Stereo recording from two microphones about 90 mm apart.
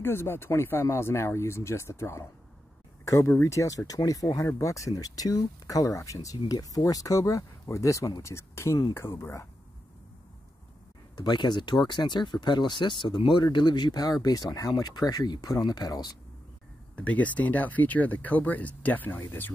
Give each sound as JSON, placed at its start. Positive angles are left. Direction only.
{"t": 0.0, "sound": "speech", "side_deg": 25}
{"t": 11.1, "sound": "speech", "side_deg": 55}
{"t": 16.9, "sound": "speech", "side_deg": 15}